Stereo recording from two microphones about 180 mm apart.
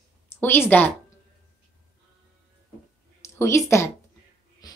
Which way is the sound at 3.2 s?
15° left (ahead or behind).